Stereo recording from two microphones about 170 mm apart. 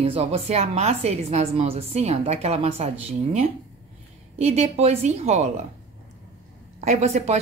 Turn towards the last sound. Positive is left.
turn(degrees=-40)  # may be behind; listen again after turning